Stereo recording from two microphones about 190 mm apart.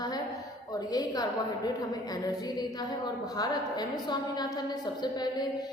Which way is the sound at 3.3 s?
20° left (ahead or behind).